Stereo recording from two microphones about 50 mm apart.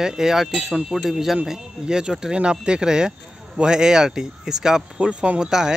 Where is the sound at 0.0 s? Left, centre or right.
Centre.